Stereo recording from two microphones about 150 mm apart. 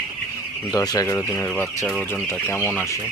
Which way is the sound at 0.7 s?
25° left (ahead or behind).